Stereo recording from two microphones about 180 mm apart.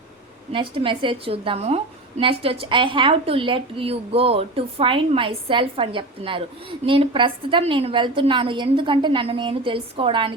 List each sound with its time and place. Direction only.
0.5 s a woman's voice: 30° right (ahead or behind)